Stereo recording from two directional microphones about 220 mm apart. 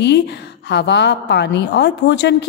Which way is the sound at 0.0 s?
50° left (ahead or behind).